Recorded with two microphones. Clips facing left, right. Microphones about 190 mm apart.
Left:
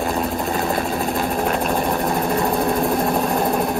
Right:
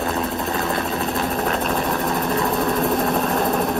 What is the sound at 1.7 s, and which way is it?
Vehicle, 30° left (ahead or behind).